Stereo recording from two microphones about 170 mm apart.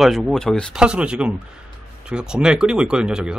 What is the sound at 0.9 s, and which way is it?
Speech, 5° right (ahead or behind).